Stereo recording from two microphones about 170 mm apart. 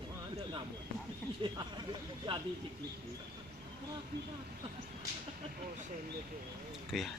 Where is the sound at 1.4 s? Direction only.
30° right (ahead or behind).